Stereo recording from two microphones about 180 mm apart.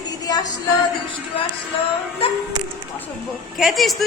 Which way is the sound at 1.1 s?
30° left (ahead or behind).